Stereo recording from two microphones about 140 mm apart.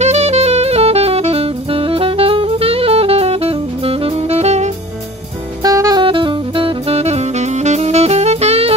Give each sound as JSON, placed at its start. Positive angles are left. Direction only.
{"t": 0.0, "sound": "saxophone", "side_deg": -50}
{"t": 5.6, "sound": "music", "side_deg": -25}
{"t": 6.0, "sound": "saxophone", "side_deg": -35}